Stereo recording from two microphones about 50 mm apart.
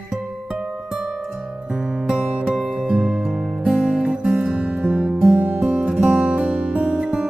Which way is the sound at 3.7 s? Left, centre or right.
Centre.